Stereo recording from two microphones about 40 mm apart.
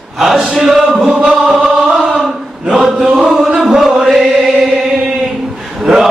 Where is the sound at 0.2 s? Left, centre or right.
Centre.